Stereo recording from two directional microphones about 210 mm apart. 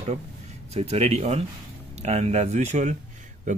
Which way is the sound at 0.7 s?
30° right (ahead or behind).